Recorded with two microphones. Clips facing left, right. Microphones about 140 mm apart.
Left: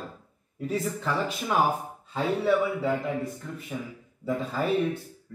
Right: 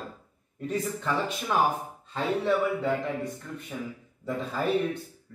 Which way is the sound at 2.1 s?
Centre (ahead or behind).